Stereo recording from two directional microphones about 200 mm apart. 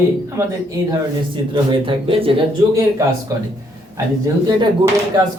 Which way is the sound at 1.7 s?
25° right (ahead or behind).